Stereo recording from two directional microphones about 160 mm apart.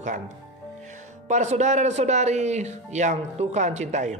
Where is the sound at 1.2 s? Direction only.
45° right (ahead or behind).